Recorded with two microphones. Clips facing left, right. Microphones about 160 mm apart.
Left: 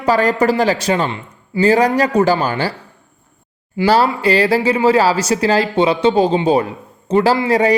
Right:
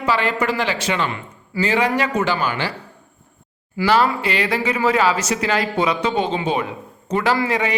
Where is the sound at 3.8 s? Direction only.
35° left (ahead or behind).